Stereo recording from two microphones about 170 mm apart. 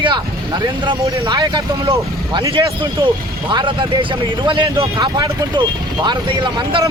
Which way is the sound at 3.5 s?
30° right (ahead or behind).